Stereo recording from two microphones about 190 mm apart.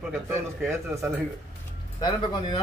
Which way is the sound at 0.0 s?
Centre (ahead or behind).